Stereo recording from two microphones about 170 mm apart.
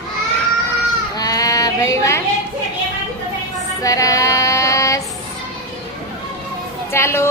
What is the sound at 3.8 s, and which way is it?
Child singing, 20° left (ahead or behind).